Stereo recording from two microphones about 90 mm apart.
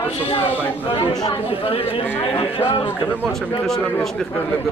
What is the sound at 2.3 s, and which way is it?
Speech, 90° left.